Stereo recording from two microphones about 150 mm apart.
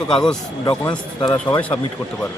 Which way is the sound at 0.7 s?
30° left (ahead or behind).